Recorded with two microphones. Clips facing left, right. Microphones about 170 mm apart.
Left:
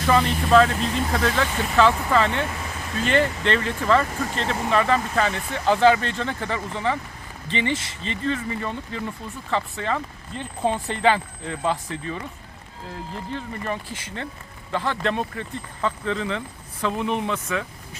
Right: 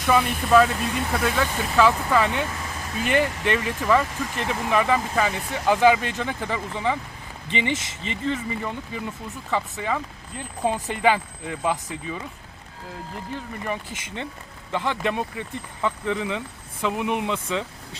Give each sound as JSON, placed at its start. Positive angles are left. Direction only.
{"t": 0.0, "sound": "speech", "side_deg": -10}
{"t": 13.3, "sound": "speech", "side_deg": -15}